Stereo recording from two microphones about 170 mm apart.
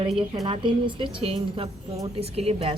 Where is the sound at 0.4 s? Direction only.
30° right (ahead or behind).